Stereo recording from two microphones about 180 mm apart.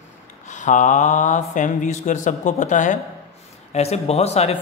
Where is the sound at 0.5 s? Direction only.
45° left (ahead or behind).